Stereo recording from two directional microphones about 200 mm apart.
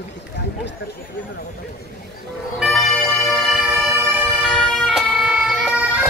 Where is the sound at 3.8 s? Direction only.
15° right (ahead or behind).